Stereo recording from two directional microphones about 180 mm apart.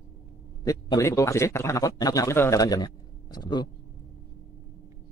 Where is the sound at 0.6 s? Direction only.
20° left (ahead or behind).